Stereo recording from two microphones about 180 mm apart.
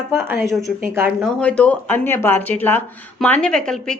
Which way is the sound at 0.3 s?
Centre (ahead or behind).